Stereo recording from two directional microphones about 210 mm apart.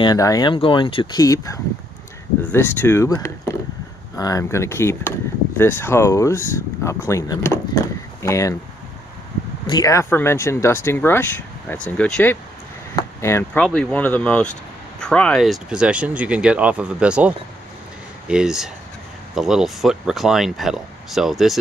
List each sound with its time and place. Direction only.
0.0 s speech: 15° left (ahead or behind)
9.7 s speech: 15° left (ahead or behind); by 17.3 s 5° right (ahead or behind)
18.3 s speech: 5° right (ahead or behind)